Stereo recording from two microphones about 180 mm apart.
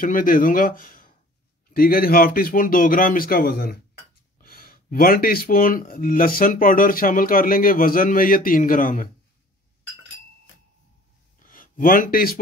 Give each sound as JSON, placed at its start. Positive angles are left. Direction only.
{"t": 0.0, "sound": "speech", "side_deg": 50}
{"t": 11.5, "sound": "speech", "side_deg": 50}